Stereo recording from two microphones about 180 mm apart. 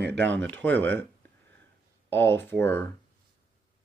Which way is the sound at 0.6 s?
10° left (ahead or behind).